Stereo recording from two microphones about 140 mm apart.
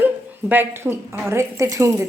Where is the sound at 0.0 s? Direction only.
15° right (ahead or behind).